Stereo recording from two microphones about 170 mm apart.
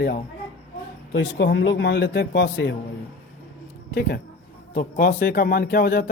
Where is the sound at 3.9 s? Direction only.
60° left (ahead or behind).